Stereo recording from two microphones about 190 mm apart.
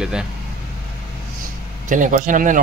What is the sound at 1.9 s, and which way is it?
Speech, 45° right (ahead or behind).